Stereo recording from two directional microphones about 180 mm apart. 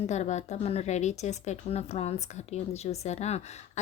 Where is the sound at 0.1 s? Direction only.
40° left (ahead or behind).